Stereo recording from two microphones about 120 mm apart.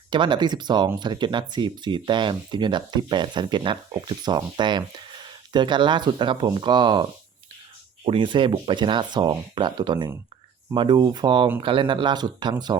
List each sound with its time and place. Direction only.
0.1 s speech: 40° right (ahead or behind)